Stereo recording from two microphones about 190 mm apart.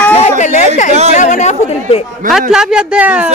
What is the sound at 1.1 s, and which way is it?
Chatter, 40° left (ahead or behind).